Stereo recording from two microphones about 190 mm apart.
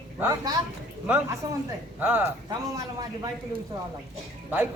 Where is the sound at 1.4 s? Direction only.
20° right (ahead or behind).